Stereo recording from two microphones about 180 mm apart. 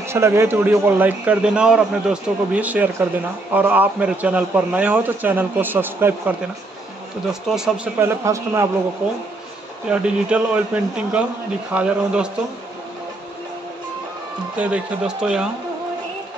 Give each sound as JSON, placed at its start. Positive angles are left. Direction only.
{"t": 0.0, "sound": "speech", "side_deg": -15}
{"t": 7.4, "sound": "speech", "side_deg": -5}
{"t": 9.8, "sound": "speech", "side_deg": -5}
{"t": 14.6, "sound": "speech", "side_deg": -5}